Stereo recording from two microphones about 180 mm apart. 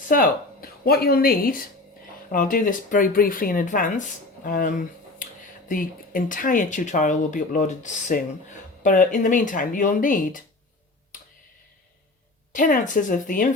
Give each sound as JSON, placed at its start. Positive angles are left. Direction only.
{"t": 0.1, "sound": "a woman's voice", "side_deg": 55}
{"t": 12.5, "sound": "speech", "side_deg": 45}